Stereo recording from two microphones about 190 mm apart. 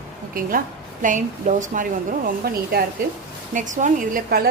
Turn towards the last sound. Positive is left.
turn(degrees=-50)  # may be behind; listen again after turning